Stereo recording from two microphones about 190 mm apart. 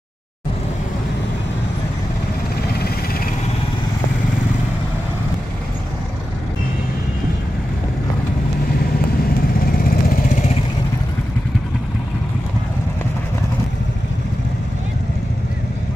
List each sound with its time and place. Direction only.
9.7 s vehicle: 50° left (ahead or behind)